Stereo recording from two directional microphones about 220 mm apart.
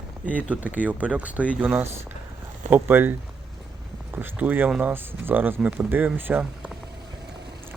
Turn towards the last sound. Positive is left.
turn(degrees=-5)  # may be behind; listen again after turning